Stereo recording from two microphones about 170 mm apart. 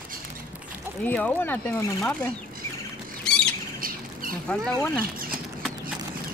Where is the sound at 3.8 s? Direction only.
55° right (ahead or behind).